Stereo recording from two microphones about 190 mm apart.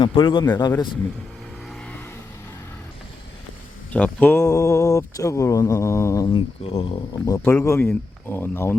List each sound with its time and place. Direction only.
0.0 s speech: 25° left (ahead or behind)
1.7 s vehicle: 5° left (ahead or behind)
3.9 s speech: 10° left (ahead or behind); by 7.2 s 30° left (ahead or behind)
7.3 s speech: 15° left (ahead or behind)